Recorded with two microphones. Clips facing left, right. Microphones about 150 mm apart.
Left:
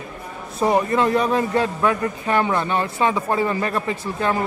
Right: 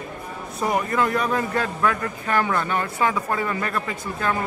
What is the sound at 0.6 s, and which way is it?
A man's voice, 25° left (ahead or behind).